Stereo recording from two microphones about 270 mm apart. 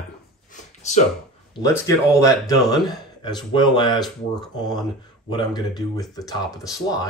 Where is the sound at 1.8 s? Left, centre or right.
Centre.